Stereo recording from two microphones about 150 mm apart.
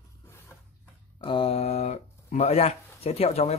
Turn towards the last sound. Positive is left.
turn(degrees=45)  # may be behind; listen again after turning